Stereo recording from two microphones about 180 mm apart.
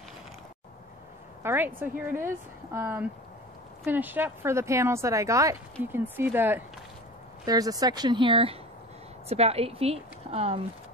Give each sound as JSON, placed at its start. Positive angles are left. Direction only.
{"t": 1.4, "sound": "a woman's voice", "side_deg": -10}